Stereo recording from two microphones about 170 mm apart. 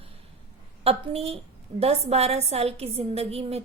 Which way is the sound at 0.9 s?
35° right (ahead or behind).